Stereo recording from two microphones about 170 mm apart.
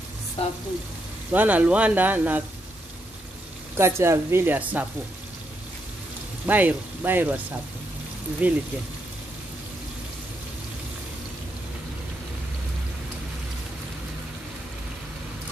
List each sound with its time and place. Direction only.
0.4 s speech: 35° left (ahead or behind)
1.3 s speech: 10° right (ahead or behind)
3.7 s speech: 15° right (ahead or behind)
6.4 s speech: 10° right (ahead or behind)
8.4 s speech: 10° right (ahead or behind)